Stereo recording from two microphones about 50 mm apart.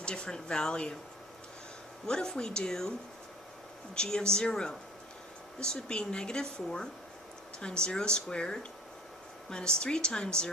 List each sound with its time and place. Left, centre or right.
0.0 s speech: centre
2.0 s speech: centre
3.9 s speech: centre